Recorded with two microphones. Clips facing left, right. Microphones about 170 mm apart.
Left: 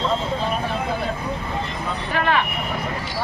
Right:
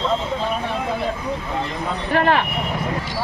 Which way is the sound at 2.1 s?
45° right (ahead or behind).